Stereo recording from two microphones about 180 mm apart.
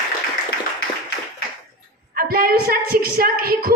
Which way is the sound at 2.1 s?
55° right (ahead or behind).